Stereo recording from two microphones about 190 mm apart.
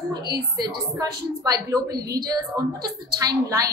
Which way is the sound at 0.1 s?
20° right (ahead or behind).